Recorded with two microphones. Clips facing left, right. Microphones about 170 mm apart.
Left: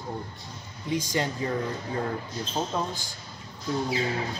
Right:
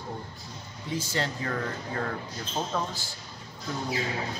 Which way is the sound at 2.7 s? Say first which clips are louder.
Even; 15° left (ahead or behind).